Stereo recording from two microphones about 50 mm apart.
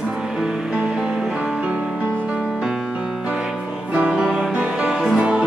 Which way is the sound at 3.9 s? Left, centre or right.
Right.